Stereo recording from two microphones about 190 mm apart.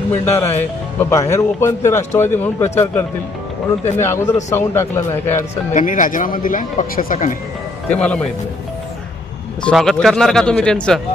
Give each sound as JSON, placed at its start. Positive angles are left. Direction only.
{"t": 0.2, "sound": "a man's voice", "side_deg": 10}
{"t": 5.7, "sound": "speech", "side_deg": 40}
{"t": 7.9, "sound": "a man's voice", "side_deg": 5}
{"t": 9.6, "sound": "speech", "side_deg": 5}